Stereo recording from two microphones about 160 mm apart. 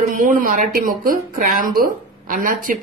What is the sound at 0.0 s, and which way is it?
A woman's voice, 55° right (ahead or behind).